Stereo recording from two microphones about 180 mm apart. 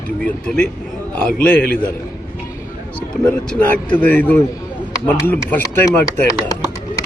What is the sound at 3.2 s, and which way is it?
A man's voice, 5° left (ahead or behind).